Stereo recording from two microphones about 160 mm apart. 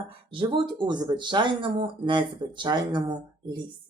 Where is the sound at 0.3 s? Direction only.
30° right (ahead or behind).